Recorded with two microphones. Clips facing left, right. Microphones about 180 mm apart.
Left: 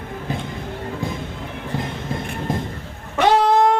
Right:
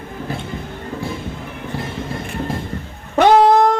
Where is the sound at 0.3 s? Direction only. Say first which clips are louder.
Left 1 dB; 20° left (ahead or behind).